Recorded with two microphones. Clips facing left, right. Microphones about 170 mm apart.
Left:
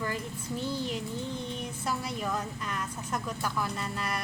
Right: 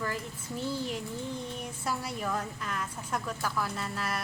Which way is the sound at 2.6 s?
5° right (ahead or behind).